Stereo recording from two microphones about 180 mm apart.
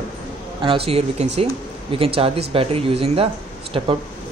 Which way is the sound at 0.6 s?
30° right (ahead or behind).